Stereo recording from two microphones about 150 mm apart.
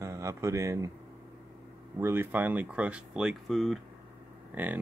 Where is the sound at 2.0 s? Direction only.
15° right (ahead or behind); by 3.8 s centre (ahead or behind).